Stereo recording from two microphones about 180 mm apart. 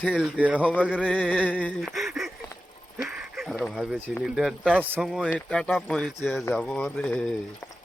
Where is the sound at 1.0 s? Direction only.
5° left (ahead or behind).